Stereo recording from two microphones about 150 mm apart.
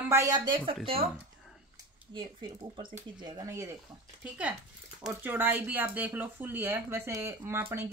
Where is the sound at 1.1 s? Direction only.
Centre (ahead or behind).